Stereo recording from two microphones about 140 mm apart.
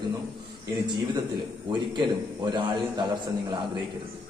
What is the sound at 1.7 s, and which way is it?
A man's voice, 35° right (ahead or behind).